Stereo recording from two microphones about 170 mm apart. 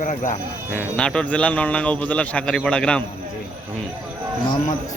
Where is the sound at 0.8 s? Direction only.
5° left (ahead or behind).